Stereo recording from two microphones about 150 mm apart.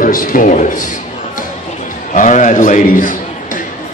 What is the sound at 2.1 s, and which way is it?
A man's voice, 55° left (ahead or behind).